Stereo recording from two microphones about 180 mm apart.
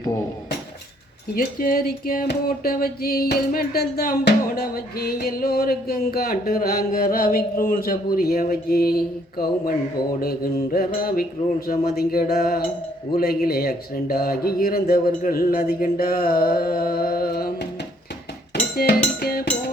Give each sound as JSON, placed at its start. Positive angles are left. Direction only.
{"t": 1.4, "sound": "music", "side_deg": 55}
{"t": 18.8, "sound": "music", "side_deg": 60}